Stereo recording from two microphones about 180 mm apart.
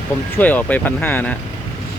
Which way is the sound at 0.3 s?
10° left (ahead or behind).